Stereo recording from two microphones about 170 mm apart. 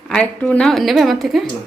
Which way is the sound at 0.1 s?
5° left (ahead or behind).